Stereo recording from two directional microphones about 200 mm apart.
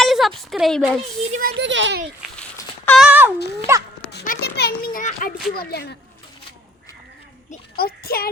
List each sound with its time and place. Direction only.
0.0 s speech: centre (ahead or behind)
1.3 s a child's voice: 45° right (ahead or behind); by 2.0 s 65° right (ahead or behind)
2.3 s a sound: 5° left (ahead or behind)
3.1 s a child's voice: 10° right (ahead or behind)
4.1 s a child's voice: 50° left (ahead or behind)
7.5 s a child's voice: 50° left (ahead or behind)